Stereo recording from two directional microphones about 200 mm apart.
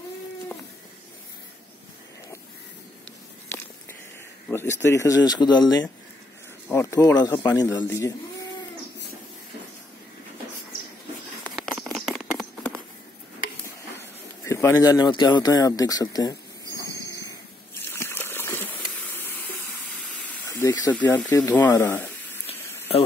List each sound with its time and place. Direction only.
4.5 s speech: 10° left (ahead or behind)
11.5 s patter: centre (ahead or behind)
13.7 s speech: 15° left (ahead or behind)
16.8 s a sound: 20° left (ahead or behind)
17.8 s gush: 10° left (ahead or behind)
19.9 s steam: 10° left (ahead or behind)
21.1 s speech: 10° left (ahead or behind)
22.5 s a sound: 30° left (ahead or behind)